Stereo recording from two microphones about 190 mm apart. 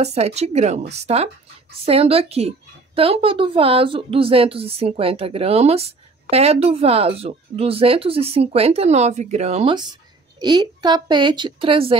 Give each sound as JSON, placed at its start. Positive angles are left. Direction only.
{"t": 0.0, "sound": "a woman's voice", "side_deg": -35}